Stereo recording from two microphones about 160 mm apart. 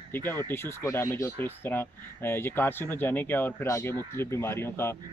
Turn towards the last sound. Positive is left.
turn(degrees=15)  # may be behind; listen again after turning